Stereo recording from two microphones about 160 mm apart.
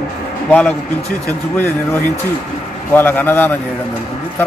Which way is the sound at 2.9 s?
10° left (ahead or behind).